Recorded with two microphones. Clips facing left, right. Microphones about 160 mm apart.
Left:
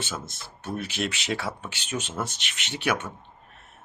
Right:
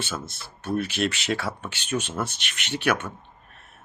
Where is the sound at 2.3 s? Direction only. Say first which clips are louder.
Right 1 dB; 65° right (ahead or behind).